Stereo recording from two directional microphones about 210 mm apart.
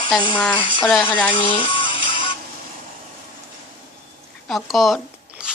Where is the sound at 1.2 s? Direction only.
25° left (ahead or behind).